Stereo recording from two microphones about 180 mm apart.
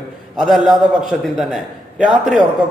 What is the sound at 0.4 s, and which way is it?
A man's voice, centre (ahead or behind).